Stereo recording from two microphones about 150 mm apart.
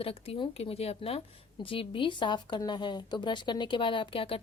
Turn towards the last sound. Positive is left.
turn(degrees=35)  # may be behind; listen again after turning